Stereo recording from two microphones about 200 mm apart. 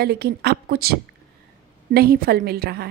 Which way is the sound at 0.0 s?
55° right (ahead or behind).